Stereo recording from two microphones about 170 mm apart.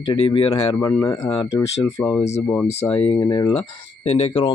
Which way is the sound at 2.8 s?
35° left (ahead or behind).